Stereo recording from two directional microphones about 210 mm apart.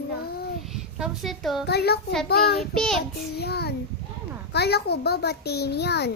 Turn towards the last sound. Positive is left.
turn(degrees=50)  # may be behind; listen again after turning